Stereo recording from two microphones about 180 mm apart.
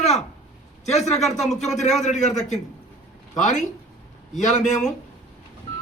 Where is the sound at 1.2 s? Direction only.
Centre (ahead or behind).